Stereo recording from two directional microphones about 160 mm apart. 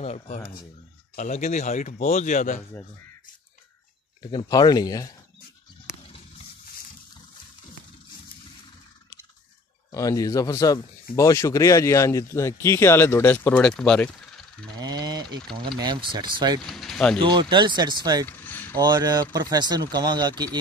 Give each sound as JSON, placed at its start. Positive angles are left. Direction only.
{"t": 0.0, "sound": "speech", "side_deg": 40}
{"t": 4.3, "sound": "a man's voice", "side_deg": 25}
{"t": 9.8, "sound": "a man's voice", "side_deg": 20}
{"t": 14.8, "sound": "speech", "side_deg": -25}
{"t": 16.6, "sound": "speech", "side_deg": 0}
{"t": 17.2, "sound": "speech", "side_deg": -30}
{"t": 18.2, "sound": "vehicle", "side_deg": 10}
{"t": 18.8, "sound": "speech", "side_deg": -25}